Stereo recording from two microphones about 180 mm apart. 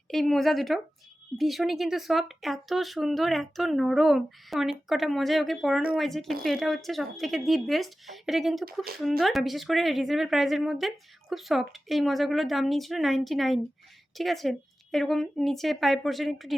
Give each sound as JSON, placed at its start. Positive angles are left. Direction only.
{"t": 0.1, "sound": "speech", "side_deg": 0}